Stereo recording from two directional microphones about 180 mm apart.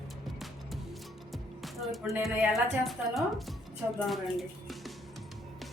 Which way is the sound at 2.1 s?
5° right (ahead or behind).